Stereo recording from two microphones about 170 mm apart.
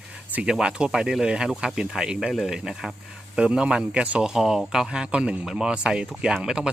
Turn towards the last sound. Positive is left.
turn(degrees=-5)  # may be behind; listen again after turning